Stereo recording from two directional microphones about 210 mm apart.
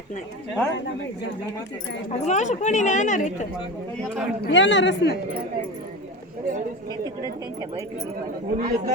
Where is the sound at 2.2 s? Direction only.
35° left (ahead or behind).